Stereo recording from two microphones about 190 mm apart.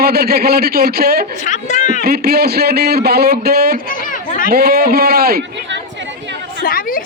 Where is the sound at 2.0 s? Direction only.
55° right (ahead or behind).